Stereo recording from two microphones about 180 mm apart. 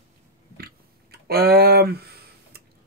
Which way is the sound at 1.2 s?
60° right (ahead or behind).